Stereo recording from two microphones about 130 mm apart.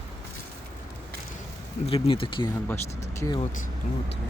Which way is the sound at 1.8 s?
45° left (ahead or behind).